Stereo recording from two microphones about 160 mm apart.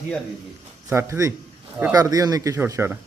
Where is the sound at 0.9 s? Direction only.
20° right (ahead or behind).